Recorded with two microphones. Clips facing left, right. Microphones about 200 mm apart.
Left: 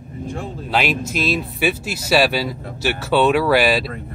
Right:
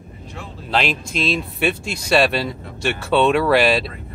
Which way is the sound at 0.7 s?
5° left (ahead or behind).